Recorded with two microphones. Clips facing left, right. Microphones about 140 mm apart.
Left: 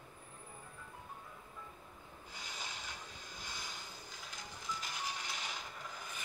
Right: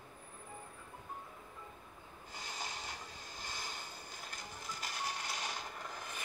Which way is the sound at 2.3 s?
50° right (ahead or behind).